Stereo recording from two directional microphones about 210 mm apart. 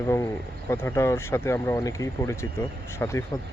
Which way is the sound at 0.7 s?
10° left (ahead or behind).